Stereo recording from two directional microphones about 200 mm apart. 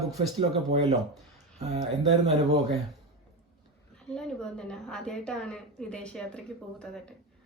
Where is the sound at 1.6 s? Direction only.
35° right (ahead or behind).